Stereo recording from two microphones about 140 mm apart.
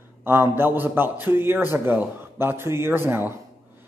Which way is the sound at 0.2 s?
15° right (ahead or behind).